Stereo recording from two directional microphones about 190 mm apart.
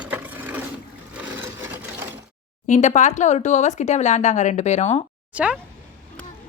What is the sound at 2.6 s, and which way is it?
Speech, 40° left (ahead or behind).